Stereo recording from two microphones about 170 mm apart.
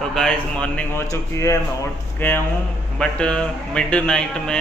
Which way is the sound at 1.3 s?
15° left (ahead or behind).